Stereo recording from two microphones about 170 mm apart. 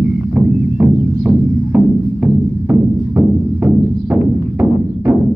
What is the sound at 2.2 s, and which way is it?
Music, 15° right (ahead or behind).